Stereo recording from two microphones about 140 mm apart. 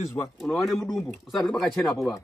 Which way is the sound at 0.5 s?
5° left (ahead or behind).